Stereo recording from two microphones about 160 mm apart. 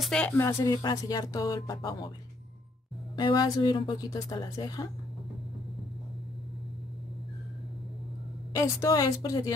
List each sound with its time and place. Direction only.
0.0 s speech: 5° left (ahead or behind)
0.4 s speech: 20° left (ahead or behind)
3.2 s speech: 25° left (ahead or behind)
8.5 s speech: 20° left (ahead or behind)